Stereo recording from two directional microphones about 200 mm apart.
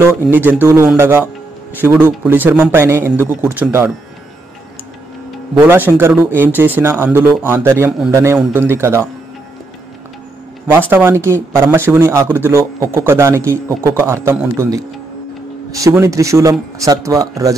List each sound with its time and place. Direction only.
0.0 s speech: 10° right (ahead or behind)
5.5 s speech: 15° right (ahead or behind)
10.9 s a man's voice: 10° right (ahead or behind)
15.7 s speech: 15° right (ahead or behind)